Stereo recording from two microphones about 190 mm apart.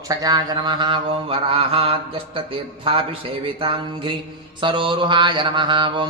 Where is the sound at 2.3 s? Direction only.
30° right (ahead or behind).